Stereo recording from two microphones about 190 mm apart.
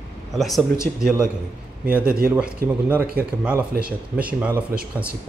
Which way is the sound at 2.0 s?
50° right (ahead or behind).